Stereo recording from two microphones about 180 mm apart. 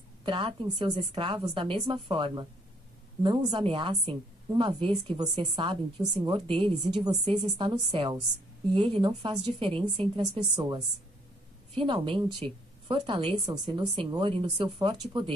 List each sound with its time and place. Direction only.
0.2 s speech: 30° right (ahead or behind)